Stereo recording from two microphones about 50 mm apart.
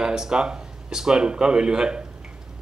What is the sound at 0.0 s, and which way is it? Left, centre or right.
Speech, centre.